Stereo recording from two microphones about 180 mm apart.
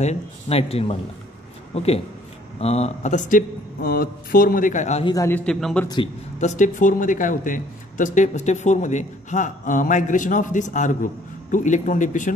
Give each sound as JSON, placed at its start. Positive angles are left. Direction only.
{"t": 0.0, "sound": "speech", "side_deg": 35}
{"t": 5.0, "sound": "a man's voice", "side_deg": 15}
{"t": 5.4, "sound": "a man's voice", "side_deg": 0}
{"t": 6.4, "sound": "speech", "side_deg": 45}